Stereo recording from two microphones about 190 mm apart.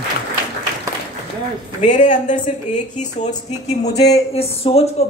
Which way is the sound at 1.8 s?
40° left (ahead or behind).